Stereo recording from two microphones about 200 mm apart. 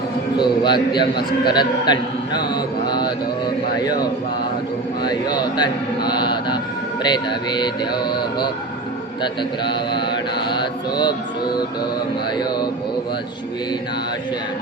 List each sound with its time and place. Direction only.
0.3 s a man's voice: 20° left (ahead or behind)
5.0 s a man's voice: 20° left (ahead or behind)
10.1 s mantra: 25° left (ahead or behind)